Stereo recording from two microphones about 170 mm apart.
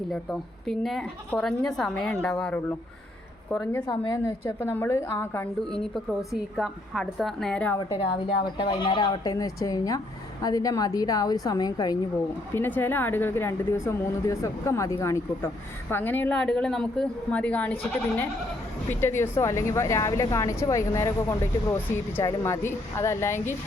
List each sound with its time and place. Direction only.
0.1 s speech: 5° left (ahead or behind)
3.7 s speech: 15° left (ahead or behind)
8.1 s speech: 25° left (ahead or behind)
12.5 s speech: 10° left (ahead or behind)
18.9 s speech: 15° left (ahead or behind)